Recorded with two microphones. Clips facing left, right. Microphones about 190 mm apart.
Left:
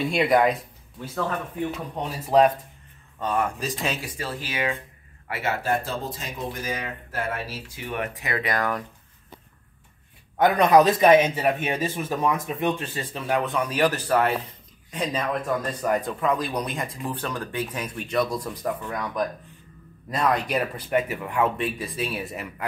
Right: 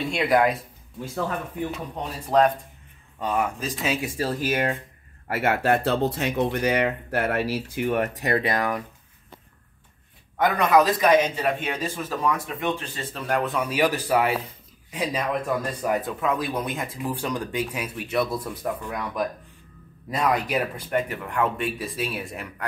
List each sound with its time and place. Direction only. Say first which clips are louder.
0.0 s a man's voice: left 1 dB; centre (ahead or behind)
2.2 s speech: left 1 dB; 10° left (ahead or behind)
3.2 s a man's voice: even; 5° right (ahead or behind)
4.2 s speech: right 6 dB; 45° right (ahead or behind)
5.3 s speech: right 4 dB; 55° right (ahead or behind); by 8.5 s 35° right (ahead or behind)
8.5 s speech: right 1 dB; 15° right (ahead or behind)
10.3 s speech: left 2 dB; 20° left (ahead or behind)
13.1 s a man's voice: even; centre (ahead or behind)